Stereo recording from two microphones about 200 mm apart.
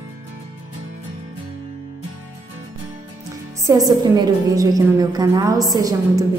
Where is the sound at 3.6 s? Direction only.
15° right (ahead or behind).